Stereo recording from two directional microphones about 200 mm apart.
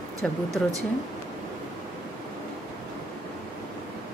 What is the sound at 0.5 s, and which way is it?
Speech, 15° right (ahead or behind).